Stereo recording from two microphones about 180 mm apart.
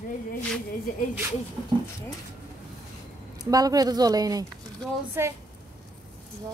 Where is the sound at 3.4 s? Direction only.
20° right (ahead or behind).